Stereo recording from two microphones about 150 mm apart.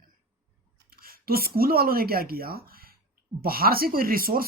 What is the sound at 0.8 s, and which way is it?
Speech, 75° right (ahead or behind).